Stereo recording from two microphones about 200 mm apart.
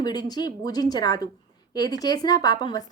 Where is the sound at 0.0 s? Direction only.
20° left (ahead or behind).